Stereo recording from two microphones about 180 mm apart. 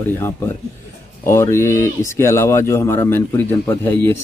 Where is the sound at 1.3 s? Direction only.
15° left (ahead or behind).